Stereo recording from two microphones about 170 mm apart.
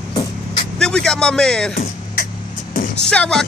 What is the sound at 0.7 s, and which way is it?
Speech, 5° left (ahead or behind).